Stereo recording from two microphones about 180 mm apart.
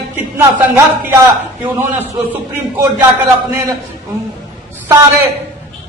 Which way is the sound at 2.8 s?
10° right (ahead or behind).